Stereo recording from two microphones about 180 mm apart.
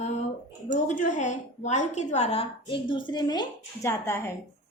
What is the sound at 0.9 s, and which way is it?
A woman's voice, 45° left (ahead or behind).